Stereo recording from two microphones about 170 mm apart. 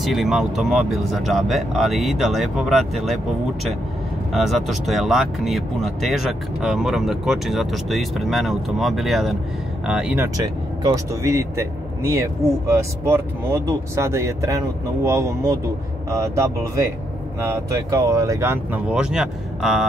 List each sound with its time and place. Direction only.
0.0 s speech: centre (ahead or behind)
4.3 s speech: centre (ahead or behind)
10.4 s speech: 25° right (ahead or behind); by 19.9 s centre (ahead or behind)